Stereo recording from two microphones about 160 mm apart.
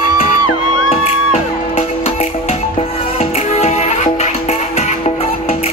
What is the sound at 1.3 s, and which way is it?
Music, 40° left (ahead or behind).